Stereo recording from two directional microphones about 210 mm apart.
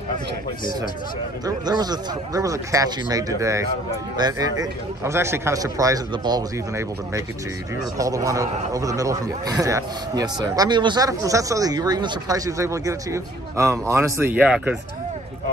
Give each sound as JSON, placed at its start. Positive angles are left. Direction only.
{"t": 1.4, "sound": "speech", "side_deg": -20}